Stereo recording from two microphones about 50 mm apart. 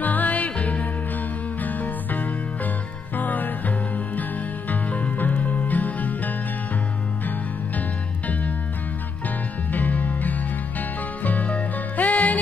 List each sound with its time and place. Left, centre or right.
0.0 s music: left
9.7 s music: left